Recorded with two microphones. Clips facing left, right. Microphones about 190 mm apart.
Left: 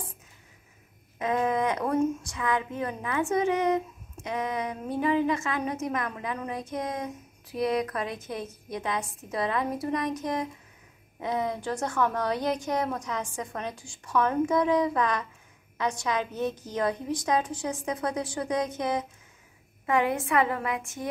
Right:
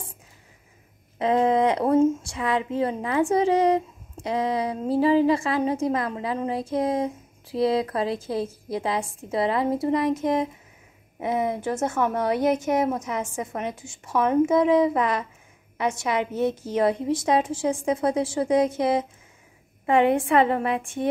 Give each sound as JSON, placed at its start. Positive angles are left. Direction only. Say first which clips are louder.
{"t": 1.1, "sound": "a woman's voice", "louder": "right 6 dB", "side_deg": -30}